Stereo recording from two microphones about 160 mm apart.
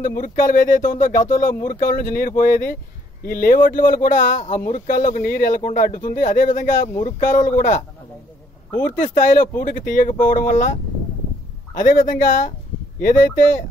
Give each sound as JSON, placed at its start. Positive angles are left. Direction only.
{"t": 0.0, "sound": "speech", "side_deg": 55}
{"t": 8.8, "sound": "speech", "side_deg": 55}
{"t": 11.7, "sound": "speech", "side_deg": 55}